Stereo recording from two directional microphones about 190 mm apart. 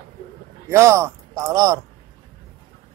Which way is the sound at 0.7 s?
15° right (ahead or behind).